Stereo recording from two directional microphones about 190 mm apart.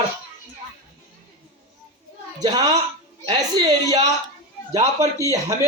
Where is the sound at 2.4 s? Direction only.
20° right (ahead or behind).